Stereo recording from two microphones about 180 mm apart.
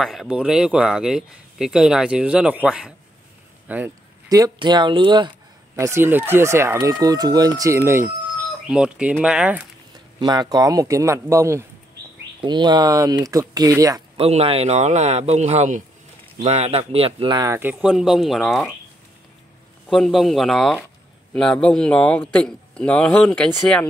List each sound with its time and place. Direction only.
0.0 s speech: centre (ahead or behind)
4.3 s speech: 25° right (ahead or behind)
5.8 s speech: 15° right (ahead or behind)
10.2 s speech: 20° right (ahead or behind)
14.1 s speech: 35° right (ahead or behind)
17.6 s speech: 10° right (ahead or behind)
19.9 s speech: centre (ahead or behind)